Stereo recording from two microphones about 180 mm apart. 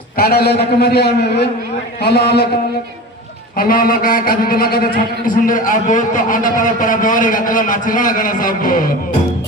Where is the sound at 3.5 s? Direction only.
55° left (ahead or behind).